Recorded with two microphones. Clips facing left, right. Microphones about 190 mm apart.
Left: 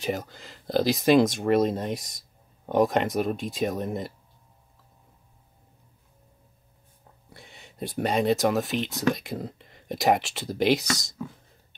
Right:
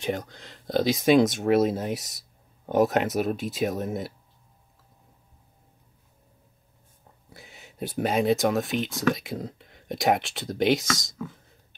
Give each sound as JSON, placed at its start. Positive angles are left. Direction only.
{"t": 0.0, "sound": "speech", "side_deg": 0}
{"t": 7.2, "sound": "speech", "side_deg": 0}